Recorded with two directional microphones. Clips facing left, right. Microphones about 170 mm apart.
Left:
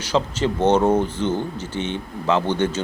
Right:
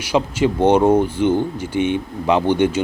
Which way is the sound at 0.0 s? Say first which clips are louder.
Right 3 dB; 10° right (ahead or behind).